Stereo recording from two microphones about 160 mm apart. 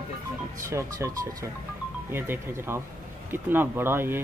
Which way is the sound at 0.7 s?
20° right (ahead or behind).